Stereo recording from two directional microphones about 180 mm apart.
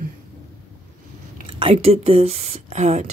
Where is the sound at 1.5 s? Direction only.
30° right (ahead or behind).